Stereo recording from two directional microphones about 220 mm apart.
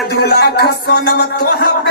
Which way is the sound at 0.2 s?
45° left (ahead or behind).